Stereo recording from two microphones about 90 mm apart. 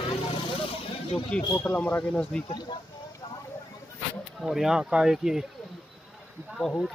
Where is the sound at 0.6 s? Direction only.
90° left.